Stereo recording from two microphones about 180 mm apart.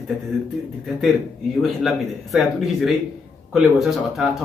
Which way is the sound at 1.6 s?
Centre (ahead or behind).